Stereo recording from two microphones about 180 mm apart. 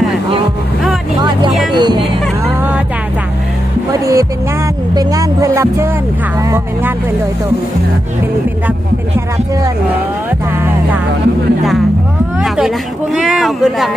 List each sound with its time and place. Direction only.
1.7 s speech: 25° right (ahead or behind)
3.9 s speech: 15° right (ahead or behind)
12.5 s speech: centre (ahead or behind)